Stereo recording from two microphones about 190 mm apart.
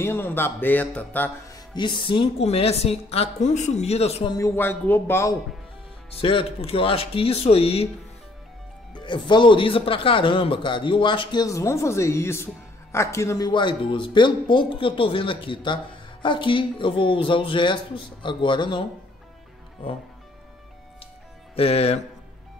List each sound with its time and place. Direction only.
0.0 s speech: 10° left (ahead or behind)
1.8 s a woman's voice: 25° left (ahead or behind)
4.6 s speech: 10° left (ahead or behind)
6.2 s a woman's voice: 30° left (ahead or behind)
8.9 s speech: 25° left (ahead or behind)
21.5 s a woman's voice: 30° left (ahead or behind)